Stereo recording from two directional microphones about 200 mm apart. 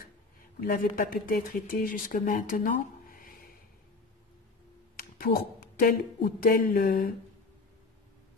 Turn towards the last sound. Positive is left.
turn(degrees=50)  # may be behind; listen again after turning